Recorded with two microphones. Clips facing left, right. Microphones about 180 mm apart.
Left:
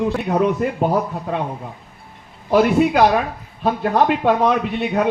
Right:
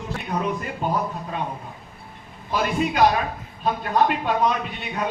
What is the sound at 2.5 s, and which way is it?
A man's voice, 70° left (ahead or behind).